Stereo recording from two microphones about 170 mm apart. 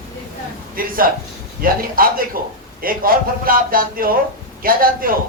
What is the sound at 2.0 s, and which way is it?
Speech, 55° right (ahead or behind).